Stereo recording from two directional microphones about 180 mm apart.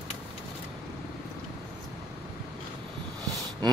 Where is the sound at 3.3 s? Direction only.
20° right (ahead or behind).